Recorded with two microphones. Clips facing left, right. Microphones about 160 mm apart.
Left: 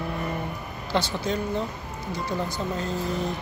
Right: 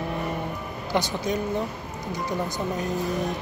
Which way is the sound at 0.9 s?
15° right (ahead or behind).